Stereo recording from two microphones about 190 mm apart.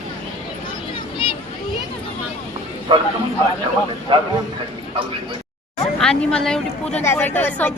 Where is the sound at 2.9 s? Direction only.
25° right (ahead or behind).